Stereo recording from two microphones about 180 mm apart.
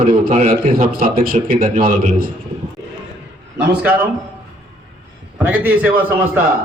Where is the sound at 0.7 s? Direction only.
50° right (ahead or behind).